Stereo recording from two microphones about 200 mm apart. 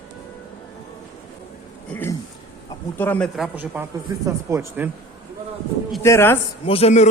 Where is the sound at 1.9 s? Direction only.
10° left (ahead or behind).